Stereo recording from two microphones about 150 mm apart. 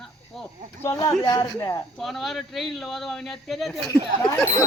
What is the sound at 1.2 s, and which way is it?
Speech, 25° left (ahead or behind).